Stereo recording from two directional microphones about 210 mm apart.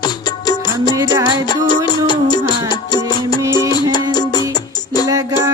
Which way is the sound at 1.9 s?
20° left (ahead or behind).